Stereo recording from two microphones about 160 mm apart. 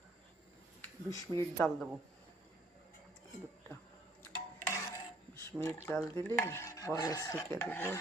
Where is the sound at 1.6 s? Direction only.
5° left (ahead or behind).